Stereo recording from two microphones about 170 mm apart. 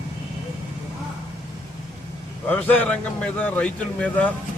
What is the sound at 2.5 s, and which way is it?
A man's voice, 10° left (ahead or behind).